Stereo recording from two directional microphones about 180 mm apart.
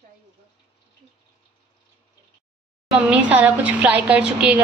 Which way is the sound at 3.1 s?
10° right (ahead or behind).